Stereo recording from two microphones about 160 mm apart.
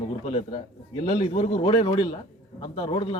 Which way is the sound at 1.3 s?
40° left (ahead or behind).